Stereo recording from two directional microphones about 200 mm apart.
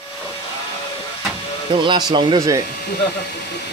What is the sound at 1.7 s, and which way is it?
Speech, 20° right (ahead or behind).